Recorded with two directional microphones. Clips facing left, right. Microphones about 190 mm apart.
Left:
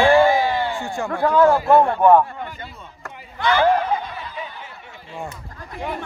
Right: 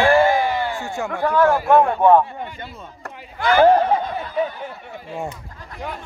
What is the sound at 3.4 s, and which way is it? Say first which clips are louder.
Speech: right 4 dB; 45° right (ahead or behind).